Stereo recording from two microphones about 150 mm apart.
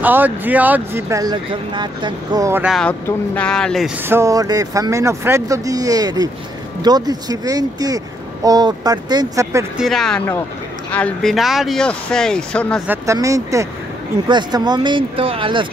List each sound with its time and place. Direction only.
0.0 s speech: 10° right (ahead or behind); by 2.5 s 30° right (ahead or behind)
2.7 s speech: 10° left (ahead or behind)
4.1 s speech: 20° right (ahead or behind)
9.8 s speech: centre (ahead or behind)
11.3 s speech: centre (ahead or behind)
12.8 s speech: 15° right (ahead or behind); by 15.6 s 35° right (ahead or behind)